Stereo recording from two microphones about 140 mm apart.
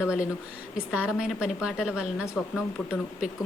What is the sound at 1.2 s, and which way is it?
A woman's voice, 5° right (ahead or behind).